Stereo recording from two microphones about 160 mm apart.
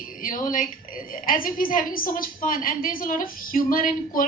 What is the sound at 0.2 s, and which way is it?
A woman's voice, 60° left (ahead or behind).